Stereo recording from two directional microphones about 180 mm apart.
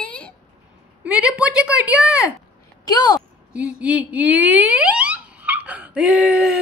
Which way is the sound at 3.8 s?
5° right (ahead or behind).